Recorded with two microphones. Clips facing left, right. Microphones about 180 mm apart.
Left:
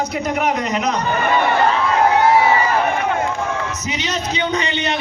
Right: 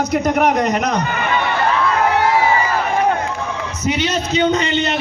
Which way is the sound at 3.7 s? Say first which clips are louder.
Right 5 dB; 55° right (ahead or behind).